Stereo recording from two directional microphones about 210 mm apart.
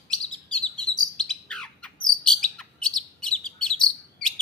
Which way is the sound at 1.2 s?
5° left (ahead or behind).